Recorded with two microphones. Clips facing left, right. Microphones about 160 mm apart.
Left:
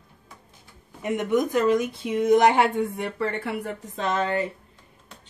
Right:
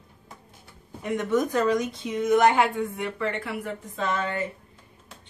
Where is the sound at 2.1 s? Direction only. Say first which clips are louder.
Left 2 dB; 30° left (ahead or behind).